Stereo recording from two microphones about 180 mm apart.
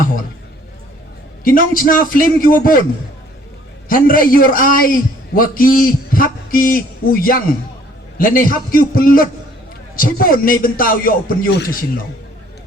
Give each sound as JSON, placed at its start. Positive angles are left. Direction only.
{"t": 1.5, "sound": "a man's voice", "side_deg": 50}
{"t": 3.8, "sound": "a man's voice", "side_deg": 50}